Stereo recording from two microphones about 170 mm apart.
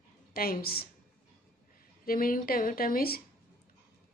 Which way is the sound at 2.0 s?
60° left (ahead or behind).